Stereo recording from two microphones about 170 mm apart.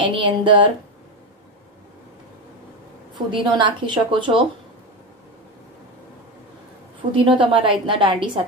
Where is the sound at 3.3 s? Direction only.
25° right (ahead or behind).